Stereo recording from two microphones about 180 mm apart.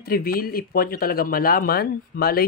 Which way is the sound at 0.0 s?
55° left (ahead or behind).